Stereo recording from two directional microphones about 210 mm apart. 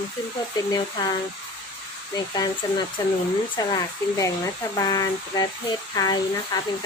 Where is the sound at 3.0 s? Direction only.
15° left (ahead or behind).